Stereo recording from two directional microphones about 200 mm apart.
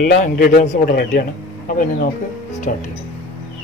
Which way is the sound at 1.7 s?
45° left (ahead or behind).